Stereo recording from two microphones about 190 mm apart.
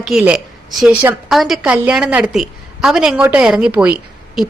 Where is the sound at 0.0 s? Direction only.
Centre (ahead or behind).